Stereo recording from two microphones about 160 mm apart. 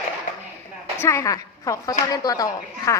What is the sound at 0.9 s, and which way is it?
A woman's voice, 15° left (ahead or behind).